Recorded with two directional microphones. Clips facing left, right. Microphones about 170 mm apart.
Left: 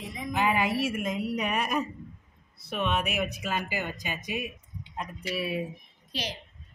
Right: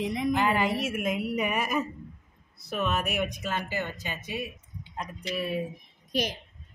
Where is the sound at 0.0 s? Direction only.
75° right (ahead or behind).